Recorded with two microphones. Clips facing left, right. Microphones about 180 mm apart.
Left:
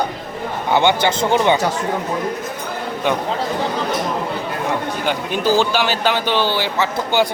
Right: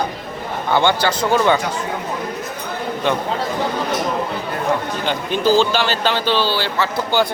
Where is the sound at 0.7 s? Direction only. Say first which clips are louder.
Left 1 dB; 15° left (ahead or behind).